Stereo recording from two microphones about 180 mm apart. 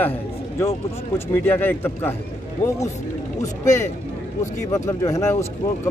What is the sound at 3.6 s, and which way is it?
Speech, 15° left (ahead or behind).